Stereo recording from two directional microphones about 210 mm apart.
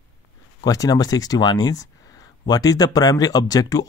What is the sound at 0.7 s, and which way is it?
Speech, 15° left (ahead or behind).